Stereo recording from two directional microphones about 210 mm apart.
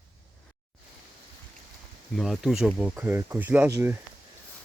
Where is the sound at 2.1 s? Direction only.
Centre (ahead or behind).